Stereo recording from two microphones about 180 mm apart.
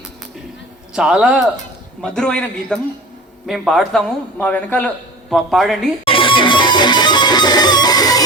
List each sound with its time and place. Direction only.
0.9 s a man's voice: 5° right (ahead or behind)
6.1 s music: 30° left (ahead or behind)